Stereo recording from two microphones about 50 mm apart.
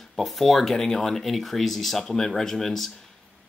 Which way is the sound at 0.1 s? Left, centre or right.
Centre.